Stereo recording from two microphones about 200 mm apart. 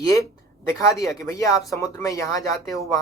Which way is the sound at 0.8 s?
15° left (ahead or behind).